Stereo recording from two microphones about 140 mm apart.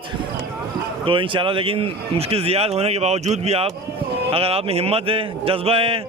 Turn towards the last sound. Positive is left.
turn(degrees=-45)  # may be behind; listen again after turning